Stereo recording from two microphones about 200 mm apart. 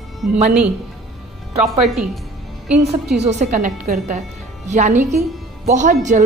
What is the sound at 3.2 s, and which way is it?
A woman's voice, 35° right (ahead or behind).